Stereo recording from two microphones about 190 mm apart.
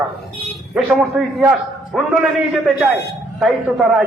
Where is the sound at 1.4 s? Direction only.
5° right (ahead or behind).